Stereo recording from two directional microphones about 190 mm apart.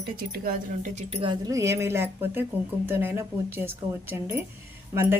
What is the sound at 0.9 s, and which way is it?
Speech, 35° right (ahead or behind).